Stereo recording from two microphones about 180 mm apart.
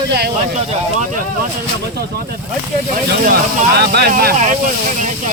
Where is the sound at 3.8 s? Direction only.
60° right (ahead or behind).